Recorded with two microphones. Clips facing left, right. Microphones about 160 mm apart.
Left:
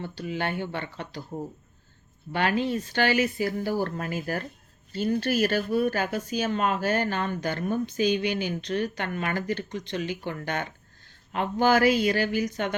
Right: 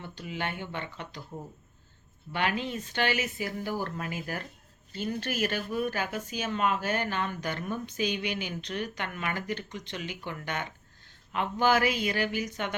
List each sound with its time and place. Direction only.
0.0 s speech: 35° left (ahead or behind)
2.3 s speech: 40° left (ahead or behind)